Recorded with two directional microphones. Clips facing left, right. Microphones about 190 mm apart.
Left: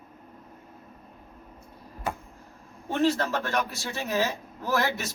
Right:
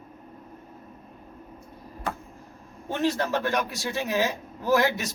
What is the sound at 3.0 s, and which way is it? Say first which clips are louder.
Speech: even; 15° right (ahead or behind).